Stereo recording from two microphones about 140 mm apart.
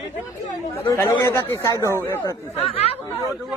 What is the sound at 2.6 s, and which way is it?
Speech, 45° left (ahead or behind).